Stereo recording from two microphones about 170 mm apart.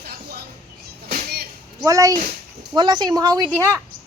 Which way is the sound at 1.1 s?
60° right (ahead or behind).